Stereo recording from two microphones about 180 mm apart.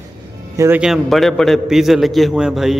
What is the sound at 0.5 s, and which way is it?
Speech, 15° right (ahead or behind).